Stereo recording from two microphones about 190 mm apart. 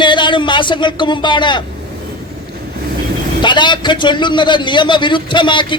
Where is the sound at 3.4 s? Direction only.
25° left (ahead or behind).